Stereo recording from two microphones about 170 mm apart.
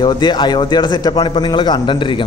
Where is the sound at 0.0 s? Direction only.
25° left (ahead or behind).